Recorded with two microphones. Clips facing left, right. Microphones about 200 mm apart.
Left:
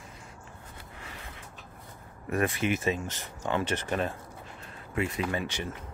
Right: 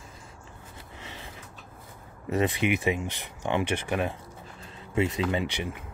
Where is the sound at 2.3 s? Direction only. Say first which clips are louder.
Right 2 dB; 20° right (ahead or behind).